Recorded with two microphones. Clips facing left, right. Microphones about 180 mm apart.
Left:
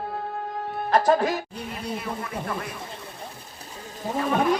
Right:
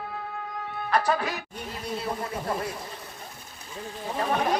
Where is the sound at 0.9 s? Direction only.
45° left (ahead or behind).